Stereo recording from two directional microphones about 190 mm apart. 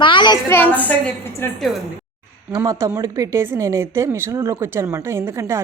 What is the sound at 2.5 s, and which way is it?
A woman's voice, 20° right (ahead or behind).